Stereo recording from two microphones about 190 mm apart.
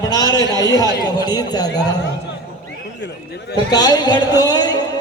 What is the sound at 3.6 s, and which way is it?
A man's voice, 20° left (ahead or behind).